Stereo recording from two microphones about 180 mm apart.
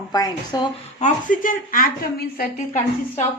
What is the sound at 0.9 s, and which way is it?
A woman's voice, 45° left (ahead or behind).